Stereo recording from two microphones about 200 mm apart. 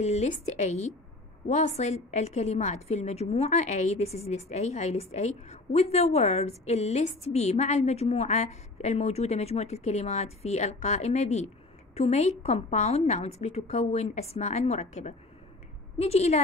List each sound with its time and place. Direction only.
0.0 s a woman's voice: 35° left (ahead or behind)